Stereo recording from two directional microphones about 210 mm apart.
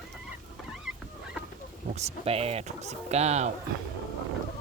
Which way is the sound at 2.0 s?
30° right (ahead or behind).